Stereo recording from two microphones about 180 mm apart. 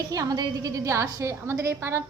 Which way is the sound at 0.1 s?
20° right (ahead or behind).